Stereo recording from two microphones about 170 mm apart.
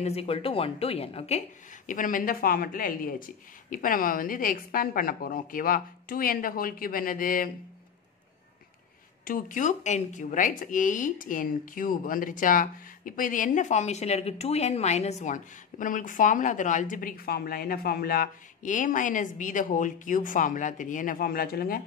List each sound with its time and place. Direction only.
0.0 s a woman's voice: 35° left (ahead or behind)
1.9 s a woman's voice: 50° left (ahead or behind)
9.2 s speech: 55° left (ahead or behind)